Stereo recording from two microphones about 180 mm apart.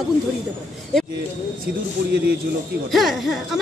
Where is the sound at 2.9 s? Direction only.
Centre (ahead or behind).